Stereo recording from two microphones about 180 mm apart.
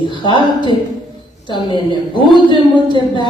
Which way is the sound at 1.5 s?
25° left (ahead or behind).